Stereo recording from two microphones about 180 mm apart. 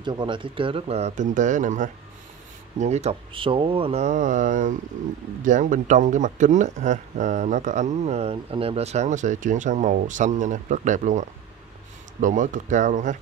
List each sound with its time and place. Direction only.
0.0 s speech: 25° right (ahead or behind); by 13.2 s 45° right (ahead or behind)